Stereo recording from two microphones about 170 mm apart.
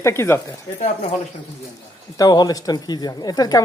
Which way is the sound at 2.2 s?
20° left (ahead or behind).